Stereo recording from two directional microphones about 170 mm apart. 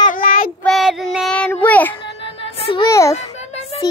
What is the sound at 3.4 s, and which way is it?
Music, 40° left (ahead or behind).